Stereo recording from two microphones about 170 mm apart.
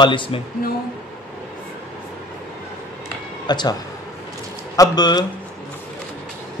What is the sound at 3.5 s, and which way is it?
A man's voice, 25° left (ahead or behind).